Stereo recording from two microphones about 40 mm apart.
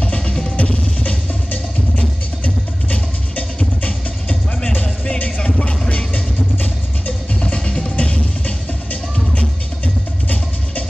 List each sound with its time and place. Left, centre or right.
0.0 s music: left
2.4 s music: left
5.6 s music: left
7.3 s music: left
10.2 s music: left